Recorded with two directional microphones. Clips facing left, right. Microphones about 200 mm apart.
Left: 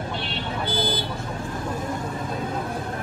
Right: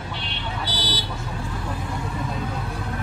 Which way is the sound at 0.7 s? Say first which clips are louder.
Left 7 dB; 50° left (ahead or behind).